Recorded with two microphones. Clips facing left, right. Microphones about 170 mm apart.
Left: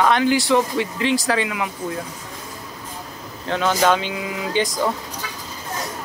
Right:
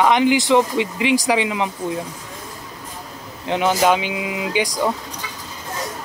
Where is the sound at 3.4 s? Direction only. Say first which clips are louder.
Right 2 dB; 15° right (ahead or behind).